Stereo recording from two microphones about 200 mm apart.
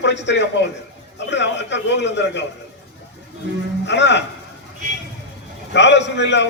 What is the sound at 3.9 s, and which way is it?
Speech, 60° left (ahead or behind).